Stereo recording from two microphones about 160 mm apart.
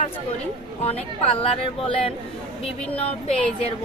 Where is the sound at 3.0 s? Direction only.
40° left (ahead or behind).